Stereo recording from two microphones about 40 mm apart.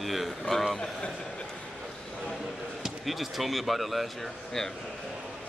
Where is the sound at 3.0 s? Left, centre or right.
Centre.